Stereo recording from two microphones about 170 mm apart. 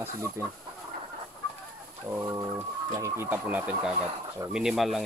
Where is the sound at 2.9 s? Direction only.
15° right (ahead or behind).